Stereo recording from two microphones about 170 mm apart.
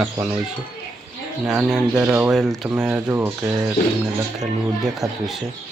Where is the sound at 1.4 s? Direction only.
Centre (ahead or behind).